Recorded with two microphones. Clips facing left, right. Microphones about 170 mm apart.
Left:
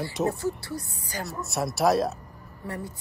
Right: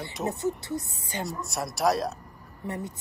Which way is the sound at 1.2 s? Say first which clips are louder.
Left 3 dB; centre (ahead or behind).